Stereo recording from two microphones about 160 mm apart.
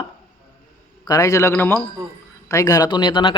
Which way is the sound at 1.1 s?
20° left (ahead or behind).